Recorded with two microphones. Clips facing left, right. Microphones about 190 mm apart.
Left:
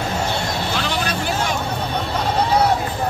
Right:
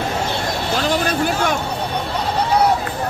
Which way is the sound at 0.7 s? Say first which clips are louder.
Right 4 dB; 45° right (ahead or behind).